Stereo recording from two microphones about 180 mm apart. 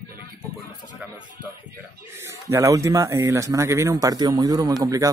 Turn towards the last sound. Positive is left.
turn(degrees=-20)  # may be behind; listen again after turning